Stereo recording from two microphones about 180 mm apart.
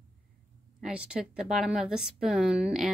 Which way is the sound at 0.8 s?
5° right (ahead or behind).